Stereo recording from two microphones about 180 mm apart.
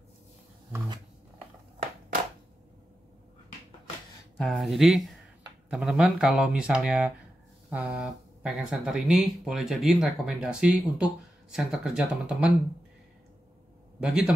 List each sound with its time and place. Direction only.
4.4 s speech: centre (ahead or behind)
13.9 s a man's voice: 5° right (ahead or behind)